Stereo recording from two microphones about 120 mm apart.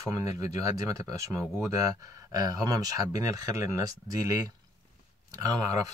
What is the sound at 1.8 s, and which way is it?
Speech, 30° right (ahead or behind).